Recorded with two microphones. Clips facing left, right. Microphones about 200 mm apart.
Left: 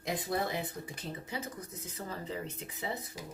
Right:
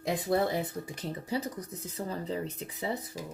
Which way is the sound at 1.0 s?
35° right (ahead or behind).